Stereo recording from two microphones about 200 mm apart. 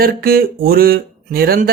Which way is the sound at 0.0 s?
50° right (ahead or behind).